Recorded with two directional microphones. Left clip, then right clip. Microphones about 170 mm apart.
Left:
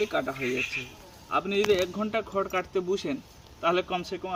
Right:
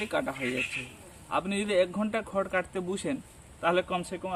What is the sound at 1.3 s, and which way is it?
A man's voice, 25° right (ahead or behind).